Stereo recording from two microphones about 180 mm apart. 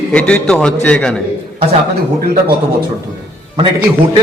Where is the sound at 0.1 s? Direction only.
5° left (ahead or behind).